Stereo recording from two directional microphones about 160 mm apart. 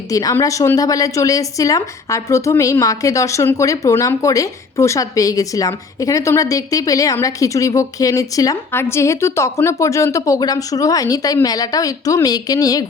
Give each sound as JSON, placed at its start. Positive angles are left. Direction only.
{"t": 0.1, "sound": "a woman's voice", "side_deg": 20}